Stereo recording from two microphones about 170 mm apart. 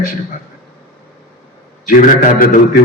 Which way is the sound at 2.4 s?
55° left (ahead or behind).